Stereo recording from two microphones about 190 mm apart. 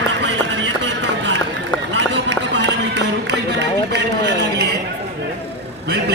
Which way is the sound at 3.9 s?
60° right (ahead or behind).